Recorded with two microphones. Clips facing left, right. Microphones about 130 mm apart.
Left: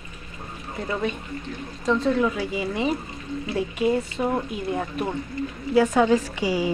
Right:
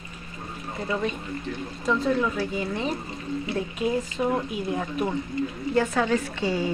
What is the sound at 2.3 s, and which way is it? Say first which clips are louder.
A woman's voice: left 1 dB; 10° left (ahead or behind).